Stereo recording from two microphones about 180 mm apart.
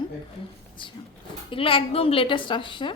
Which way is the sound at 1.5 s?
30° left (ahead or behind).